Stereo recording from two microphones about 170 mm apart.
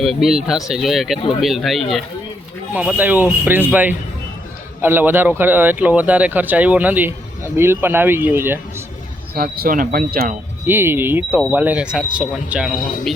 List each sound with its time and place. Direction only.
0.0 s speech: centre (ahead or behind)
2.7 s speech: 10° right (ahead or behind)
9.3 s speech: 60° right (ahead or behind)
10.7 s speech: 15° right (ahead or behind)